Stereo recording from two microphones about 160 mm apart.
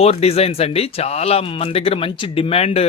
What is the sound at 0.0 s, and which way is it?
Speech, 40° left (ahead or behind).